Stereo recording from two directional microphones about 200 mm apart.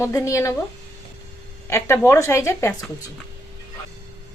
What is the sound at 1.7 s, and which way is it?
A woman's voice, 15° left (ahead or behind).